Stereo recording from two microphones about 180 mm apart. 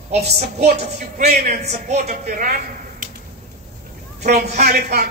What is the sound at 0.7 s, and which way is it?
A man's voice, 45° right (ahead or behind).